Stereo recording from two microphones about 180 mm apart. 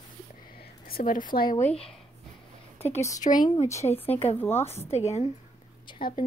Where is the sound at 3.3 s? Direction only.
35° left (ahead or behind).